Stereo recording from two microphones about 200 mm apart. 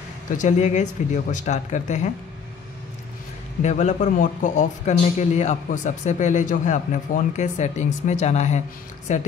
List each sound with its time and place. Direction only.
0.4 s a man's voice: 35° left (ahead or behind)
3.6 s a man's voice: 35° left (ahead or behind)